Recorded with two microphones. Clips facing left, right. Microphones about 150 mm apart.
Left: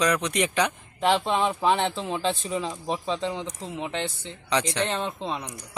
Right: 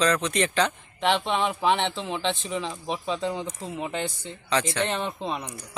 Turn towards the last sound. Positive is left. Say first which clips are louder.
# even
turn(degrees=15)  # may be behind; listen again after turning